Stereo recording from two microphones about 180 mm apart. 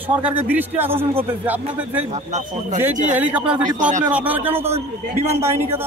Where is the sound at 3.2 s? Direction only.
5° right (ahead or behind).